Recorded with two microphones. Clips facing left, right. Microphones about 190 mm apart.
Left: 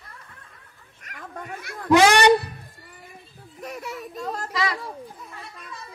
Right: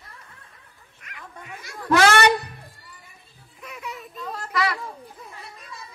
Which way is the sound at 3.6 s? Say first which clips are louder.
Left 4 dB; 40° left (ahead or behind).